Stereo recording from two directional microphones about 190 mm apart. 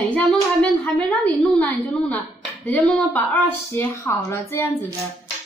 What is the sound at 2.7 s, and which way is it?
A woman's voice, 5° left (ahead or behind).